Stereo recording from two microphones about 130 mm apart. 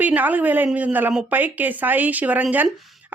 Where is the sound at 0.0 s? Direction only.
15° right (ahead or behind).